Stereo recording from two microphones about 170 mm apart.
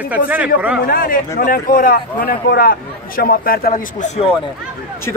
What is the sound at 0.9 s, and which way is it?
Speech, 55° left (ahead or behind).